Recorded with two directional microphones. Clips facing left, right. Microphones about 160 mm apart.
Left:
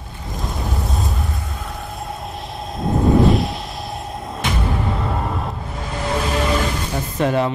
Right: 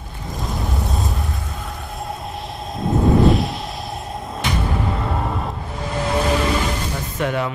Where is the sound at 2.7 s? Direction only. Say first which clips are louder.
Left 1 dB; centre (ahead or behind).